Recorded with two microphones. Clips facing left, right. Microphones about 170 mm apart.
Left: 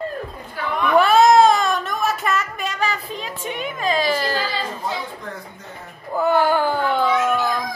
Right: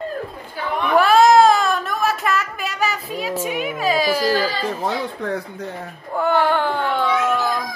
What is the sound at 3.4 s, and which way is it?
A woman's voice, 5° right (ahead or behind).